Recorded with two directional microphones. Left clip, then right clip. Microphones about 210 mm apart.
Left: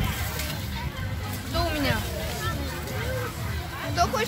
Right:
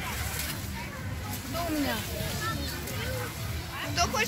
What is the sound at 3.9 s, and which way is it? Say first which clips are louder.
Speech: left 3 dB; 45° left (ahead or behind).